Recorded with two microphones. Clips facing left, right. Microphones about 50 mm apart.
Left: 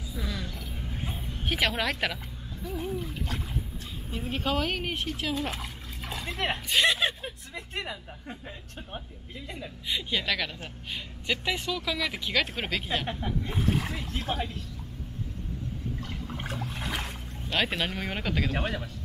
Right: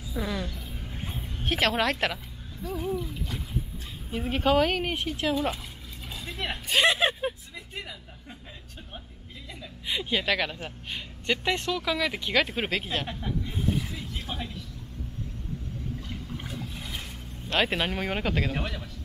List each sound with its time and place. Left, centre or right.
0.1 s a woman's voice: right
0.7 s a sound: centre
1.1 s speech: centre
2.6 s music: centre
3.0 s splash: left
4.2 s speech: centre
6.1 s speech: left
6.7 s speech: centre
7.8 s speech: centre
9.8 s speech: centre
13.5 s speech: left
17.5 s speech: centre
18.6 s speech: centre